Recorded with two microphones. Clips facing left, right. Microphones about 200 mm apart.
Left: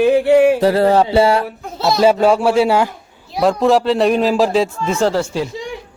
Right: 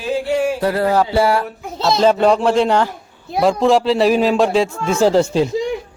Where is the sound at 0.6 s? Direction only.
30° left (ahead or behind).